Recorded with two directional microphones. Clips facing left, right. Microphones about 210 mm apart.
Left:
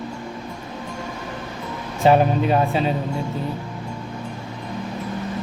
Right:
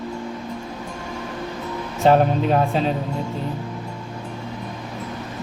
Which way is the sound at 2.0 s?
5° left (ahead or behind).